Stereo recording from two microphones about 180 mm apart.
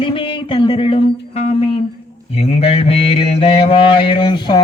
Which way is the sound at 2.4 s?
35° left (ahead or behind).